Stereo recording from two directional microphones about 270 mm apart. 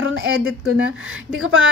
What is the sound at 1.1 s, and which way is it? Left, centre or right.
Speech, right.